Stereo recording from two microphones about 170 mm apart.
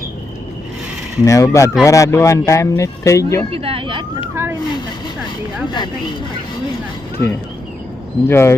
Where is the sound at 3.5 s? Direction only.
35° right (ahead or behind).